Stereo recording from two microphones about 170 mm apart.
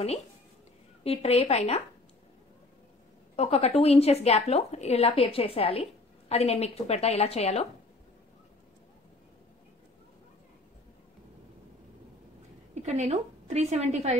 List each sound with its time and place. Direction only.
1.0 s a woman's voice: 35° left (ahead or behind)
3.3 s a woman's voice: 35° left (ahead or behind)
12.7 s a woman's voice: 40° right (ahead or behind)